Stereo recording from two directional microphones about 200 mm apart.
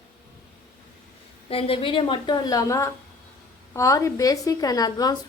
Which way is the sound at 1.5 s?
30° left (ahead or behind).